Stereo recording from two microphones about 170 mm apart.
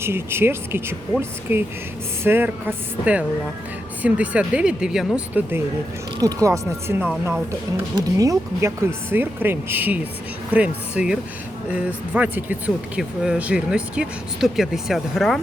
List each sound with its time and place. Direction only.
0.0 s speech: 15° right (ahead or behind)